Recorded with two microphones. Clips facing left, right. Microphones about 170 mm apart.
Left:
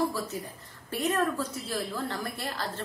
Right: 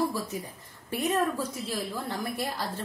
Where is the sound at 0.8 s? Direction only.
15° right (ahead or behind).